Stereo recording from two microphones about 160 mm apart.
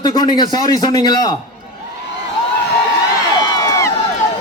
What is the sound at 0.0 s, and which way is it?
A man's voice, 25° left (ahead or behind).